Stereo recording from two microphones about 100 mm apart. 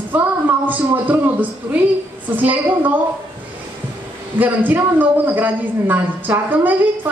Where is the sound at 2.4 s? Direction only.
20° right (ahead or behind).